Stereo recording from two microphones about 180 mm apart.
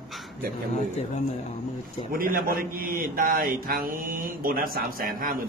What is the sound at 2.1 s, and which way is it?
Speech, 50° right (ahead or behind).